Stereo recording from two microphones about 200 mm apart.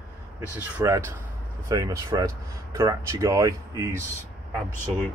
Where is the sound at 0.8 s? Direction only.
15° right (ahead or behind).